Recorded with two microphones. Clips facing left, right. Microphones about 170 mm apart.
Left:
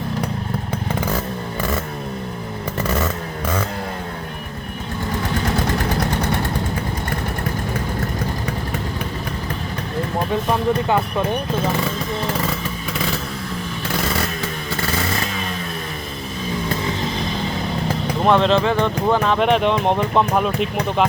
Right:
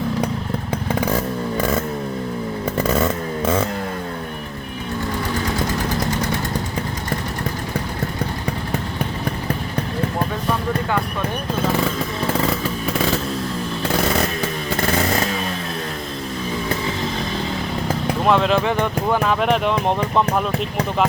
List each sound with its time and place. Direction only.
2.8 s chainsaw: 20° right (ahead or behind)
18.3 s speech: 5° right (ahead or behind)
19.2 s speech: centre (ahead or behind)